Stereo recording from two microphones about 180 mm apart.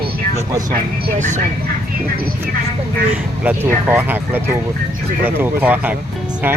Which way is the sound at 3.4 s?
10° right (ahead or behind).